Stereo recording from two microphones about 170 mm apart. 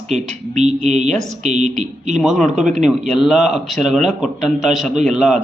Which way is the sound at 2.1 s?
Centre (ahead or behind).